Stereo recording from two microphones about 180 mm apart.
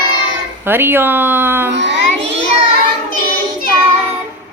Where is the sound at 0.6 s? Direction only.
10° right (ahead or behind).